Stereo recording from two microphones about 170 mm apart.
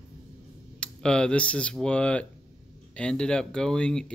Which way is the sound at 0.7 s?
5° left (ahead or behind).